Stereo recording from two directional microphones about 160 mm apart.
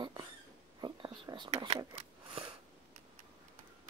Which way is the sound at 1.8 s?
35° right (ahead or behind).